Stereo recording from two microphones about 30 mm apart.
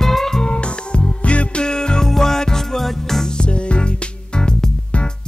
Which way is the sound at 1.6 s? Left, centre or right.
Left.